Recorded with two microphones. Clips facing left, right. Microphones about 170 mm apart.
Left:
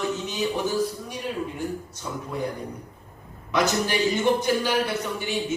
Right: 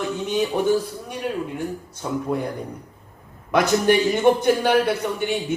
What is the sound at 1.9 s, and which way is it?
Speech, 55° right (ahead or behind).